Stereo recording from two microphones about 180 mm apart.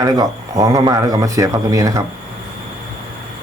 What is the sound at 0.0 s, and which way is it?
Speech, 20° right (ahead or behind).